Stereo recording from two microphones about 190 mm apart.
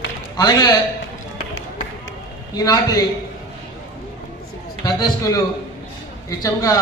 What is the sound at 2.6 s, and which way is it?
Speech, 20° left (ahead or behind).